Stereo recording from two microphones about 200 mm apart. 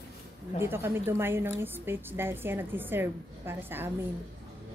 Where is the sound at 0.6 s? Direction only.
10° right (ahead or behind).